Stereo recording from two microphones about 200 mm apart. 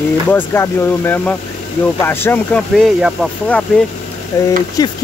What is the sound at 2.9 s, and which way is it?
Speech, 5° right (ahead or behind).